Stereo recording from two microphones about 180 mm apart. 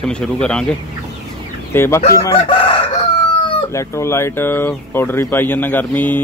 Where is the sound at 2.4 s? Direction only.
30° left (ahead or behind).